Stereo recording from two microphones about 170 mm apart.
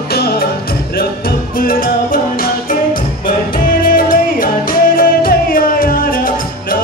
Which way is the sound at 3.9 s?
55° left (ahead or behind).